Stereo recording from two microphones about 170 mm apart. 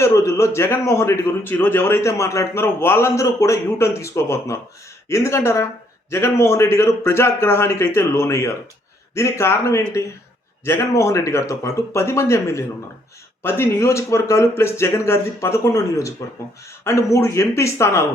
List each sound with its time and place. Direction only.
0.0 s a man's voice: 15° left (ahead or behind)